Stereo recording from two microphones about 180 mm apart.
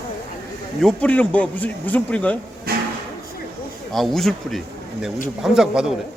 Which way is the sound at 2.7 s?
55° right (ahead or behind).